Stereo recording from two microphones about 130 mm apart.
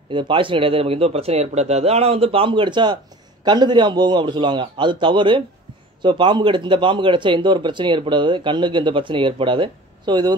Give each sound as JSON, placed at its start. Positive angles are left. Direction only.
{"t": 0.1, "sound": "speech", "side_deg": -40}